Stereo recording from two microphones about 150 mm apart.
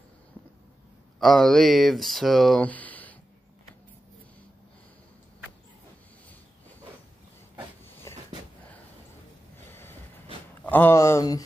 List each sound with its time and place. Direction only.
1.2 s speech: 5° left (ahead or behind)
9.7 s vehicle: 15° left (ahead or behind)
10.6 s speech: 15° left (ahead or behind)